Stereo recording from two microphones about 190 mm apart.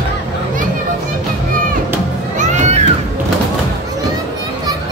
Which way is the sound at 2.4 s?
40° right (ahead or behind).